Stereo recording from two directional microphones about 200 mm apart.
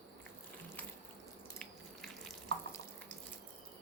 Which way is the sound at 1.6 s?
Centre (ahead or behind).